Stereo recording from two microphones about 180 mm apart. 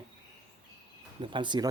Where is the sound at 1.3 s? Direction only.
25° right (ahead or behind).